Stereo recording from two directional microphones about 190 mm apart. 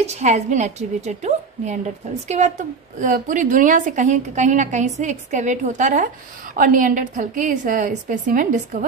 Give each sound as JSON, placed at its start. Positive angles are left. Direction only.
{"t": 0.0, "sound": "a woman's voice", "side_deg": -35}